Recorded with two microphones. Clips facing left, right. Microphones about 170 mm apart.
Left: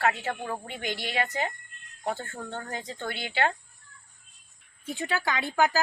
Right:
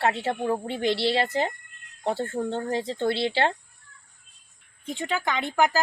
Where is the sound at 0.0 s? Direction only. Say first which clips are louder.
Right 3 dB; 30° right (ahead or behind).